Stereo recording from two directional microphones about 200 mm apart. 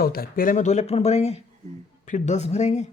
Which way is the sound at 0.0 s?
50° left (ahead or behind).